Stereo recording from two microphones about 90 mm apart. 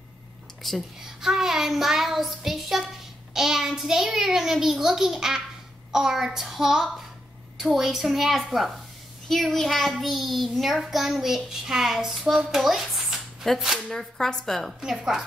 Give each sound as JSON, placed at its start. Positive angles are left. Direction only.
{"t": 0.7, "sound": "a child's voice", "side_deg": 0}